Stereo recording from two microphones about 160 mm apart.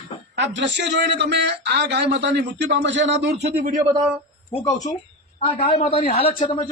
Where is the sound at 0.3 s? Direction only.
90° right.